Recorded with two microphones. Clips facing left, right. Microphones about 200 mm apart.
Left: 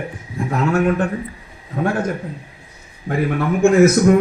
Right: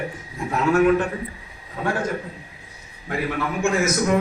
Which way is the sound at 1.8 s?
55° left (ahead or behind).